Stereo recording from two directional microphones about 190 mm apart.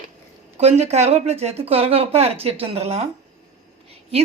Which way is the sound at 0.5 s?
35° right (ahead or behind).